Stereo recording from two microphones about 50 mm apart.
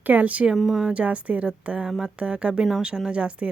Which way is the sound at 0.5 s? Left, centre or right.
Centre.